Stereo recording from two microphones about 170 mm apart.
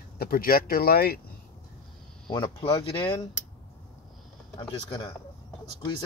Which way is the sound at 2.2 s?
25° left (ahead or behind).